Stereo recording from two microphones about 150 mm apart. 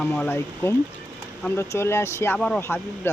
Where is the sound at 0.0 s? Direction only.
15° left (ahead or behind).